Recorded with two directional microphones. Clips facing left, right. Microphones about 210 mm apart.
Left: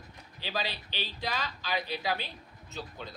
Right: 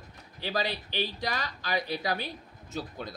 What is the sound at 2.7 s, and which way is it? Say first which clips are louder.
Speech: right 5 dB; 45° right (ahead or behind).